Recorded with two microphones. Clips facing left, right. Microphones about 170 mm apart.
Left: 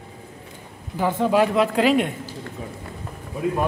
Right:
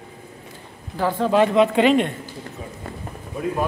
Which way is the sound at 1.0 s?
15° left (ahead or behind).